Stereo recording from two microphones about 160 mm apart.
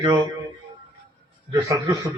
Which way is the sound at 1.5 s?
20° right (ahead or behind).